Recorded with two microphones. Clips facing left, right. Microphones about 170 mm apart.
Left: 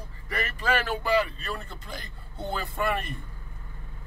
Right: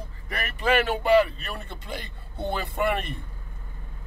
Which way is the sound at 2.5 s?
20° right (ahead or behind).